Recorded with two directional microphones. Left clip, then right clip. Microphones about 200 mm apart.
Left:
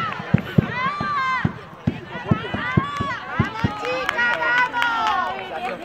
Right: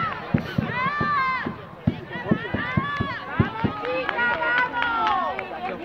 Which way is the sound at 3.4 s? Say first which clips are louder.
Right 1 dB; 50° left (ahead or behind).